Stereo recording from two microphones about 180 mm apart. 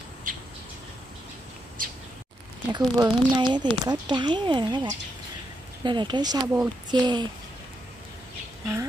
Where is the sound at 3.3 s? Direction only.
25° right (ahead or behind).